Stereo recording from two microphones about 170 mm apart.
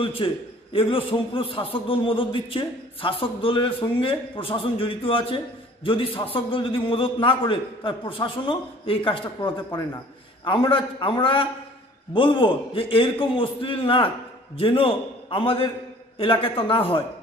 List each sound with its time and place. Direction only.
0.0 s a man's voice: 30° left (ahead or behind)